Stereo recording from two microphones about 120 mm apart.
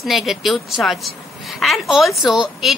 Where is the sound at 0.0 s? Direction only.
Centre (ahead or behind).